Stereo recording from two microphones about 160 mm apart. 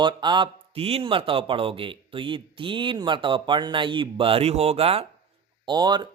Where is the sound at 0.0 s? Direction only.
30° right (ahead or behind).